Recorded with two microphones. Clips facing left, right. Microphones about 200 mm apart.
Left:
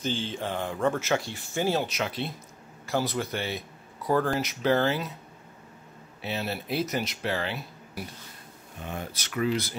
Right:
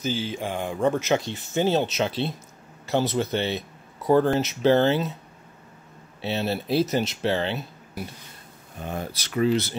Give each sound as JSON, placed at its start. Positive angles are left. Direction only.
{"t": 0.0, "sound": "speech", "side_deg": -5}
{"t": 6.2, "sound": "speech", "side_deg": -30}
{"t": 8.8, "sound": "speech", "side_deg": -35}